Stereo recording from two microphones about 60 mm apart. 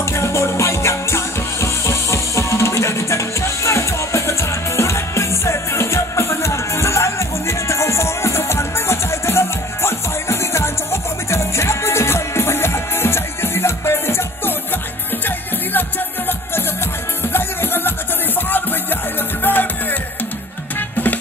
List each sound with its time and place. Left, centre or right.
0.0 s music: left
16.3 s music: left